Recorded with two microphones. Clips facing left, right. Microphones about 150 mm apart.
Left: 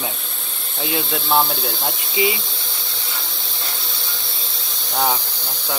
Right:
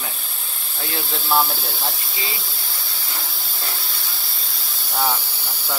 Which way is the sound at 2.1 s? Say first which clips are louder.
Left 11 dB; 20° left (ahead or behind).